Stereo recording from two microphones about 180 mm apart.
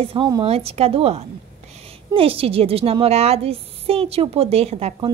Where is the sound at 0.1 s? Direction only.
30° right (ahead or behind).